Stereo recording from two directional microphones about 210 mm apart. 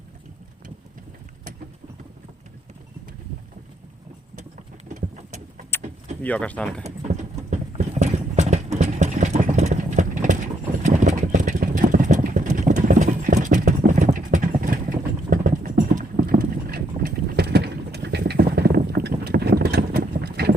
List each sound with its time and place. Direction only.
4.9 s vehicle: 35° right (ahead or behind)
6.2 s speech: 5° left (ahead or behind)
6.8 s clip-clop: 35° right (ahead or behind)
17.3 s vehicle: 50° right (ahead or behind)